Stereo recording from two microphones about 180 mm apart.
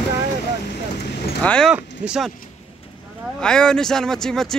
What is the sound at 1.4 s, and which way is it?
Speech, 5° left (ahead or behind).